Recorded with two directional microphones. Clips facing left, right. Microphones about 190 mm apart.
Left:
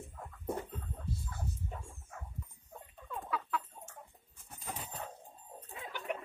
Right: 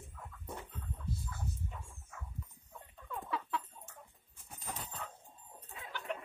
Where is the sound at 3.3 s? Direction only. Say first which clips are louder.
Left 2 dB; 25° right (ahead or behind).